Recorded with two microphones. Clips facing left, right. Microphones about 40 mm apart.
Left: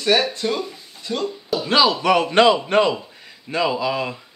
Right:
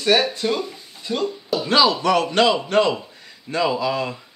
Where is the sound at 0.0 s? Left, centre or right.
Centre.